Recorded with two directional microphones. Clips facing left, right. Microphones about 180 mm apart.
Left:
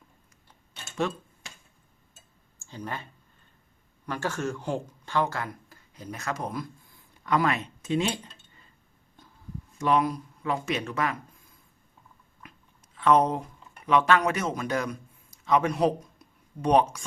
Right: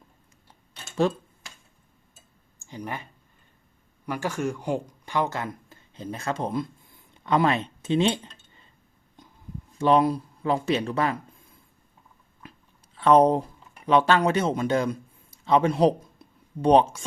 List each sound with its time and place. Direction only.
1.0 s speech: 35° right (ahead or behind)
2.6 s speech: 15° right (ahead or behind)
9.7 s speech: 30° right (ahead or behind)
12.4 s a sound: 30° right (ahead or behind)